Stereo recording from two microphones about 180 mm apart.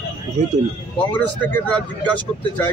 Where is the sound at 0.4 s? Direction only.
40° right (ahead or behind).